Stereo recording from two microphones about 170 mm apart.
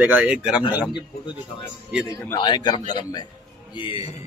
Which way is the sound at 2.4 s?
25° left (ahead or behind).